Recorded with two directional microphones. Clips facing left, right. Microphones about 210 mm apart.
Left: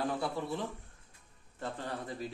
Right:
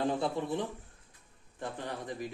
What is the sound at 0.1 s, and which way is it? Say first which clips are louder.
A man's voice: right 3 dB; 20° right (ahead or behind).